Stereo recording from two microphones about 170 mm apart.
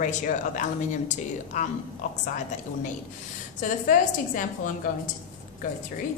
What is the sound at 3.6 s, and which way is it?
Speech, 50° left (ahead or behind).